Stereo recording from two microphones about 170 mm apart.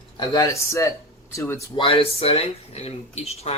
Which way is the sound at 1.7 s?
30° left (ahead or behind).